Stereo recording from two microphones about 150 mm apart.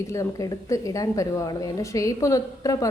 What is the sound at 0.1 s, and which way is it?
A woman's voice, 20° left (ahead or behind).